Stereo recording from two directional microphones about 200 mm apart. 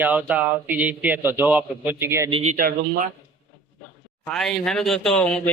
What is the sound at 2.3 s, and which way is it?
Speech, 35° right (ahead or behind).